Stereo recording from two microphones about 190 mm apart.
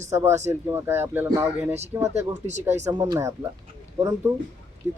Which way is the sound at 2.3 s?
35° right (ahead or behind).